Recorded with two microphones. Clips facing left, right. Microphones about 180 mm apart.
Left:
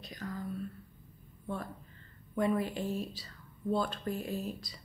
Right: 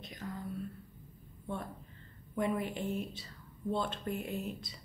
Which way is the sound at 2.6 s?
20° right (ahead or behind).